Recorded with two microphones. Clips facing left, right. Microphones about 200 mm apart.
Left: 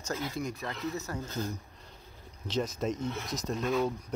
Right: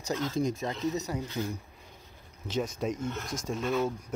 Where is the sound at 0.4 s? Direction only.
25° right (ahead or behind).